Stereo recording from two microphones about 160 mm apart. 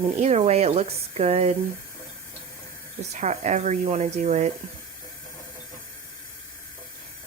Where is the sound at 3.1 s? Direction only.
45° right (ahead or behind).